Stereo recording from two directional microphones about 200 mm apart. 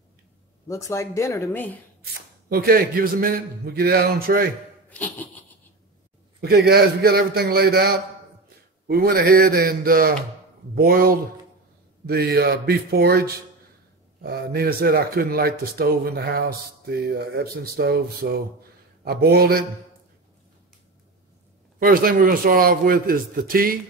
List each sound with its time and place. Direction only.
0.7 s speech: 15° left (ahead or behind)
2.5 s speech: 50° right (ahead or behind)
4.8 s a sound: 10° left (ahead or behind)
6.4 s speech: 50° right (ahead or behind)
21.7 s speech: 45° right (ahead or behind)